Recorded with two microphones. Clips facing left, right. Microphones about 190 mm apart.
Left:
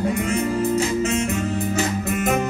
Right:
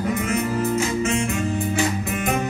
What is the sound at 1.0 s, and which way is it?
Music, 35° left (ahead or behind).